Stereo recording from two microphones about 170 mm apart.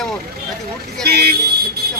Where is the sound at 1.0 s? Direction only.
70° right (ahead or behind).